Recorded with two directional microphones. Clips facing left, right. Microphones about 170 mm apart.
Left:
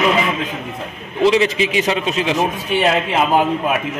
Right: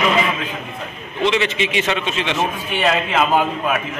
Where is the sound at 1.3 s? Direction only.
35° left (ahead or behind).